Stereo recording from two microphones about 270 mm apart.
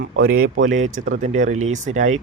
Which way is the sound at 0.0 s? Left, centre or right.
Right.